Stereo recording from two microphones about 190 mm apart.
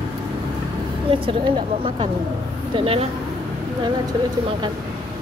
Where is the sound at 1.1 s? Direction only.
30° right (ahead or behind).